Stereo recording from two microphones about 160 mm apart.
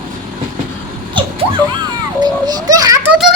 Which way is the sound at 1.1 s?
30° right (ahead or behind).